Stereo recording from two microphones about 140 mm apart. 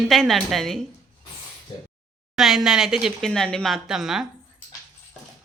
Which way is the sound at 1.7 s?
30° left (ahead or behind).